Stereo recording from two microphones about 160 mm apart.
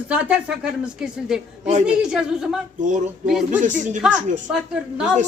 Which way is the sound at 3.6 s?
50° right (ahead or behind).